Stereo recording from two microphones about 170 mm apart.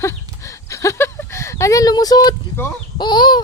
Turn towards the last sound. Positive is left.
turn(degrees=25)  # may be behind; listen again after turning